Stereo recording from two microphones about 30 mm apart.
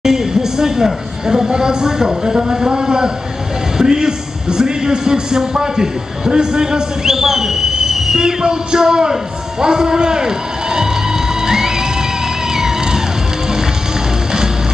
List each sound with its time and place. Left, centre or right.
0.0 s a sound: centre
1.2 s a man's voice: centre
7.1 s speech: centre
8.2 s speech: right
9.6 s run: right